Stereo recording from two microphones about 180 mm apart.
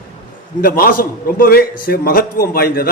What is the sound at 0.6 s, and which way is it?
A man's voice, 50° left (ahead or behind).